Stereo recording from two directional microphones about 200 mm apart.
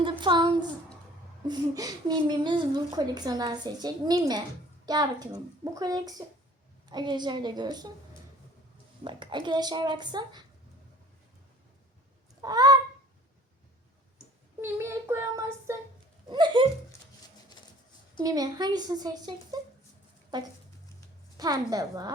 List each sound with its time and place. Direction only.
0.0 s a sound: 25° right (ahead or behind)
1.5 s a woman's voice: 20° right (ahead or behind)
9.0 s a woman's voice: 25° right (ahead or behind)
12.4 s honk: 20° right (ahead or behind)
14.6 s child singing: 10° right (ahead or behind)
16.3 s a woman's voice: 25° right (ahead or behind)
18.2 s a woman's voice: 20° right (ahead or behind)
21.3 s child singing: 20° right (ahead or behind)